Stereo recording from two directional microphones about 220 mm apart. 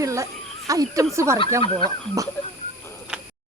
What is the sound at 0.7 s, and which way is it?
Speech, 15° right (ahead or behind).